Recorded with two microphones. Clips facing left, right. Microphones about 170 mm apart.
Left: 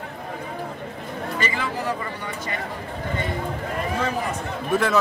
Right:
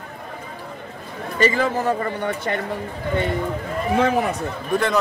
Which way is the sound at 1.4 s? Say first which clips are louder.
Right 10 dB; 45° right (ahead or behind).